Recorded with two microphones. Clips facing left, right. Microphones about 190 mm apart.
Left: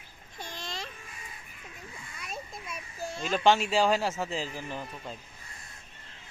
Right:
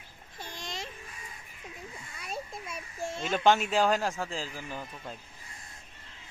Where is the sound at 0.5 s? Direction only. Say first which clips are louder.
Even; 20° right (ahead or behind).